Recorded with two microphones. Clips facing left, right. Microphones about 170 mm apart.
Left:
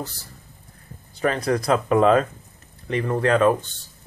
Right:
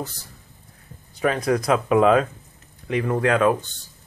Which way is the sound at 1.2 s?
5° right (ahead or behind).